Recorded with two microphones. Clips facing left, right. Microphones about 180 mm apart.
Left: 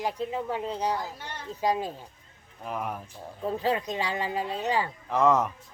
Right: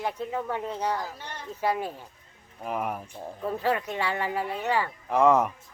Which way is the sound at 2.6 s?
5° right (ahead or behind).